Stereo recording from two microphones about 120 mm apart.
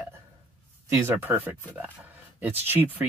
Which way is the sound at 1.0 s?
20° right (ahead or behind).